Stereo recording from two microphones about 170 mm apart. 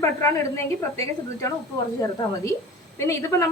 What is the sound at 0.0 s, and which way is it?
A woman's voice, 15° left (ahead or behind).